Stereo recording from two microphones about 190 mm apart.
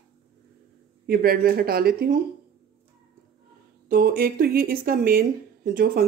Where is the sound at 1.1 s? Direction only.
50° right (ahead or behind).